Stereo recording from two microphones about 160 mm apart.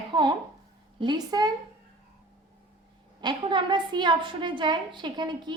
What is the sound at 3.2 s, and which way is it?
A woman's voice, 30° right (ahead or behind).